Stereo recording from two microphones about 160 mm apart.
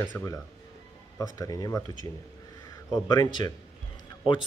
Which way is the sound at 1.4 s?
20° left (ahead or behind).